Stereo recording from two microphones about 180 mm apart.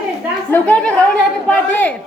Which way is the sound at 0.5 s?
5° left (ahead or behind).